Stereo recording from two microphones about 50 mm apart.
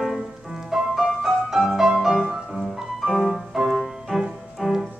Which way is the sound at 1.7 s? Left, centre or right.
Centre.